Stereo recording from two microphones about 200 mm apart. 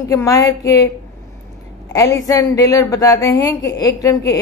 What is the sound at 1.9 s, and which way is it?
A woman's voice, 15° left (ahead or behind).